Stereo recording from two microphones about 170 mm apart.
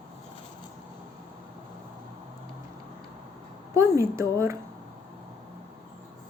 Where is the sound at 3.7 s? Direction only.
15° right (ahead or behind).